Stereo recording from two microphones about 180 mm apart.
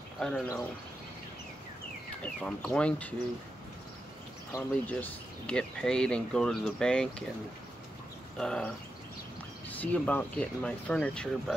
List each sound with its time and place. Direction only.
0.2 s speech: 5° left (ahead or behind)
2.2 s speech: 5° left (ahead or behind)
4.5 s speech: 15° left (ahead or behind)
8.4 s speech: 5° left (ahead or behind)